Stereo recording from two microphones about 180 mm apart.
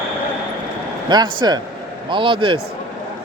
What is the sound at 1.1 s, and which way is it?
A man's voice, 25° right (ahead or behind).